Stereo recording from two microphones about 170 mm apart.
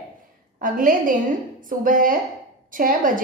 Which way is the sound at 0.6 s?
55° right (ahead or behind).